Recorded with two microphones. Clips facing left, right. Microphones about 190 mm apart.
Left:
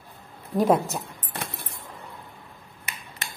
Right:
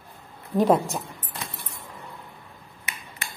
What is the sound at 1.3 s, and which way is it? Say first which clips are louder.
Keys jangling: left 4 dB; 60° left (ahead or behind).